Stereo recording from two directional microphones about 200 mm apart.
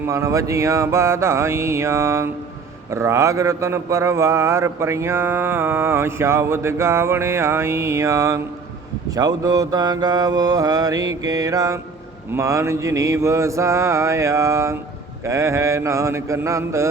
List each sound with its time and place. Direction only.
0.0 s speech: 15° right (ahead or behind)
9.0 s mantra: 20° right (ahead or behind)
12.3 s speech: 15° right (ahead or behind)